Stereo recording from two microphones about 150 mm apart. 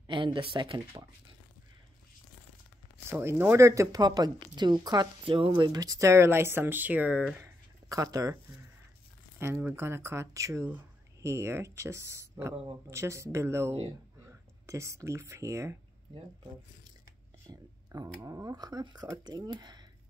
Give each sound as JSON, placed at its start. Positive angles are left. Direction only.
{"t": 0.0, "sound": "speech", "side_deg": -35}
{"t": 3.1, "sound": "speech", "side_deg": -15}
{"t": 7.9, "sound": "speech", "side_deg": -25}
{"t": 9.4, "sound": "speech", "side_deg": -15}
{"t": 17.5, "sound": "speech", "side_deg": -25}